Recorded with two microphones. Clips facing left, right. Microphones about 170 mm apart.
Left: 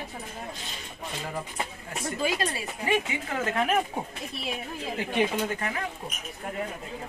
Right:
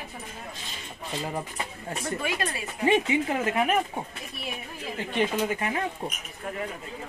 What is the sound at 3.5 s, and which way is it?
Speech, 5° right (ahead or behind).